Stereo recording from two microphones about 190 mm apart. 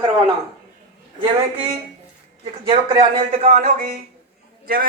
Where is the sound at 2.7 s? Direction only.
35° right (ahead or behind).